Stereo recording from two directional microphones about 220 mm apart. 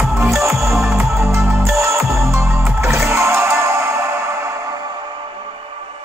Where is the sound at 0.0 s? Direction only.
5° right (ahead or behind).